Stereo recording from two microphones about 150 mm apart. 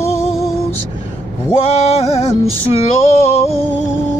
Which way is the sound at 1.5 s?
45° left (ahead or behind).